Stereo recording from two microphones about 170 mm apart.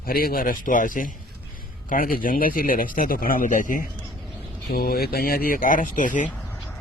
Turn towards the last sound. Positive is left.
turn(degrees=50)  # may be behind; listen again after turning